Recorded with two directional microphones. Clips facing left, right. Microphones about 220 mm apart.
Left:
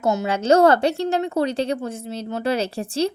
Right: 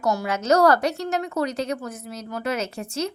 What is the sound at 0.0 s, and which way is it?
Speech, 25° left (ahead or behind).